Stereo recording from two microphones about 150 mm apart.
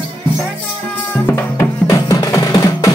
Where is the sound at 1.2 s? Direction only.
15° left (ahead or behind).